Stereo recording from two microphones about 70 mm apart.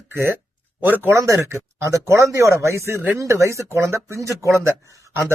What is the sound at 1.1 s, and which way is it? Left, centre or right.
A man's voice, right.